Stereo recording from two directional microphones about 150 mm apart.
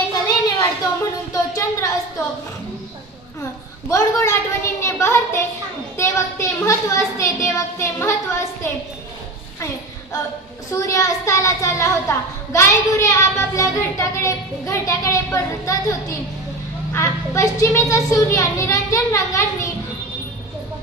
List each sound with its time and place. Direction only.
0.6 s a sound: 20° left (ahead or behind)
3.9 s a child's voice: 20° left (ahead or behind)
10.7 s a child's voice: 20° left (ahead or behind)